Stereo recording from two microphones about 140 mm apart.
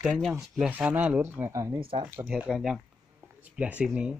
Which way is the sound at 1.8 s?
40° right (ahead or behind).